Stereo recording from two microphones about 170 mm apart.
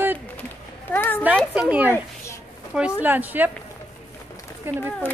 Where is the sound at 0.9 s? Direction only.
10° left (ahead or behind).